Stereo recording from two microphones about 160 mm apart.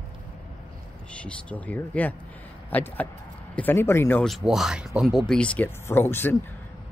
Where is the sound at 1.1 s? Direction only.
5° left (ahead or behind).